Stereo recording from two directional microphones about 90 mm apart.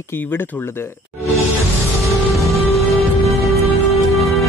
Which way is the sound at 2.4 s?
35° left (ahead or behind).